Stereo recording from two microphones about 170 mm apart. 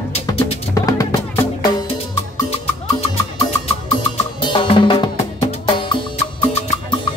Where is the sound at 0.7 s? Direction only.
20° left (ahead or behind).